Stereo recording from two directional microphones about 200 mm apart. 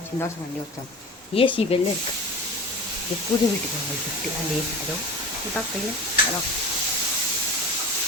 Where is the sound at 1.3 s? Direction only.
25° left (ahead or behind).